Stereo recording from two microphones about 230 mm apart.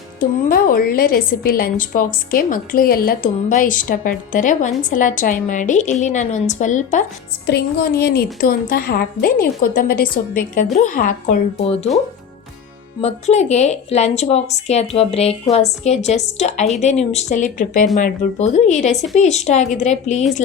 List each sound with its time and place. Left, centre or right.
0.2 s a woman's voice: left
7.4 s a woman's voice: left
13.0 s a woman's voice: left